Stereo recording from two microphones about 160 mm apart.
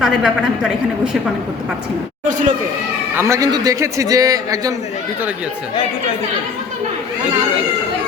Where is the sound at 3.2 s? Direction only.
20° right (ahead or behind).